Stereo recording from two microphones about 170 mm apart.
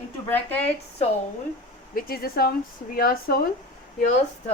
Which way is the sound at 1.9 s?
60° left (ahead or behind).